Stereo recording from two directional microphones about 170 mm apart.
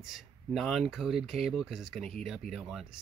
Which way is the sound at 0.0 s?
Centre (ahead or behind).